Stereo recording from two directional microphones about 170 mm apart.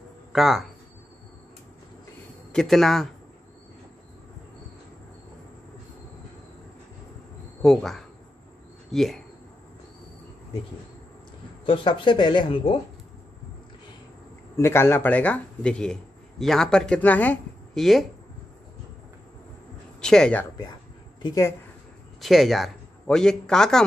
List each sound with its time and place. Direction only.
0.3 s speech: centre (ahead or behind)
2.5 s a man's voice: centre (ahead or behind)
7.6 s a man's voice: 5° left (ahead or behind)
11.6 s speech: 30° left (ahead or behind)
14.6 s speech: 15° left (ahead or behind)
20.0 s a man's voice: 5° left (ahead or behind)
21.2 s speech: 15° left (ahead or behind)
22.2 s a man's voice: centre (ahead or behind)